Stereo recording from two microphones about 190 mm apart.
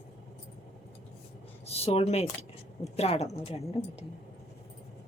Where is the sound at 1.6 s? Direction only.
30° left (ahead or behind).